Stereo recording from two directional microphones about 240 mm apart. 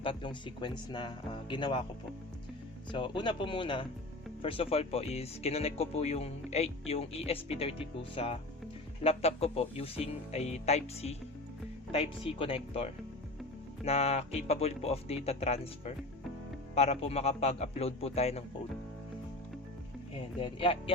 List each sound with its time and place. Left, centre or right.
0.0 s speech: left
2.9 s speech: centre
20.1 s speech: left